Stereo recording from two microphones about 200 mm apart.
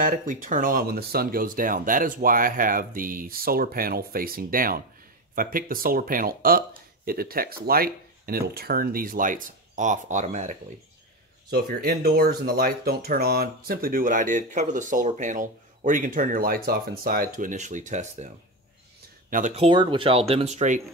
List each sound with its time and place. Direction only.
0.0 s speech: 40° right (ahead or behind)
11.5 s speech: 50° right (ahead or behind)
19.3 s speech: 35° right (ahead or behind)